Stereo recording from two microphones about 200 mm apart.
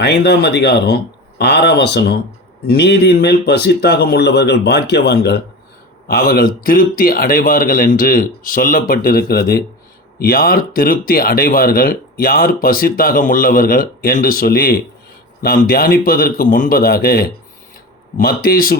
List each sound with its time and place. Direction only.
0.0 s speech: 55° left (ahead or behind)